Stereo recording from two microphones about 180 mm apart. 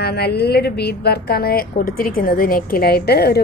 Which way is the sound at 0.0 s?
60° left (ahead or behind).